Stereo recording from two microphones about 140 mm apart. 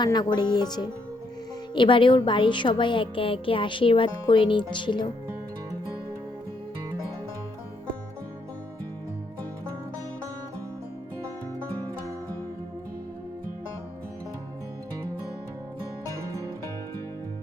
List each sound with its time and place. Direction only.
0.0 s a woman's voice: 30° left (ahead or behind)